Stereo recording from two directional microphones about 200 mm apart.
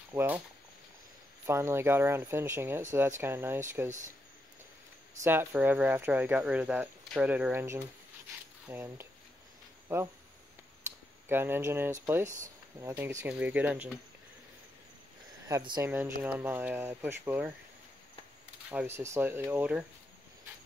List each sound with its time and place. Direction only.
0.1 s speech: 10° right (ahead or behind)
1.4 s speech: 15° right (ahead or behind)
5.2 s speech: 10° right (ahead or behind)
11.2 s speech: 10° right (ahead or behind)
15.4 s speech: 20° right (ahead or behind)
18.7 s speech: 10° right (ahead or behind)